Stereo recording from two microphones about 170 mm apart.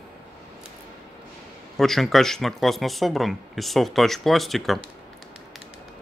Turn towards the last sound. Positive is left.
turn(degrees=0)  # may be behind; listen again after turning